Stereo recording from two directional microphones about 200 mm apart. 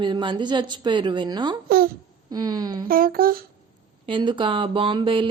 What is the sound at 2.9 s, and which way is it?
Speech, 45° right (ahead or behind).